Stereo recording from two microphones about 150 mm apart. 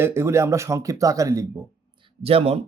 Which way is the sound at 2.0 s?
40° right (ahead or behind).